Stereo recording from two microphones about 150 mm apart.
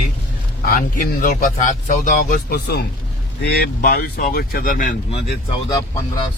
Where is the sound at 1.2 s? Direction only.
55° left (ahead or behind).